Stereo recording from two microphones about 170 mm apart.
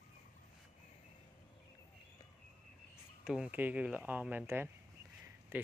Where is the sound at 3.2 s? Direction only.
5° right (ahead or behind).